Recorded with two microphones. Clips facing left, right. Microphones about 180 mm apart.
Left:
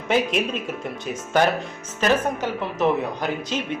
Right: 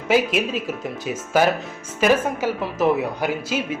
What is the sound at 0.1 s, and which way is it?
Speech, 5° right (ahead or behind).